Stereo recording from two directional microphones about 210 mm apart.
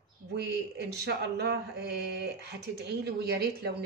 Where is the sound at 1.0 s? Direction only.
50° right (ahead or behind).